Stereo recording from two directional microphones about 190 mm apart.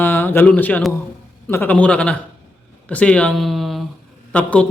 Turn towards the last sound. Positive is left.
turn(degrees=5)  # may be behind; listen again after turning